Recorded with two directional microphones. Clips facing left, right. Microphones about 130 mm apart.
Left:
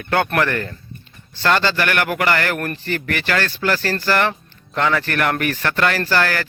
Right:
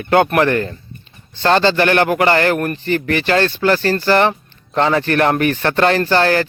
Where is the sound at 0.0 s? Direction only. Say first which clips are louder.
Right 6 dB; 20° right (ahead or behind).